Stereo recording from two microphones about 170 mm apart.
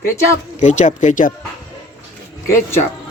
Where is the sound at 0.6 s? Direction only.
45° left (ahead or behind).